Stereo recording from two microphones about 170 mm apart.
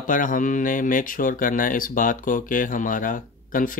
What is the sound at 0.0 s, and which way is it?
Speech, 50° left (ahead or behind).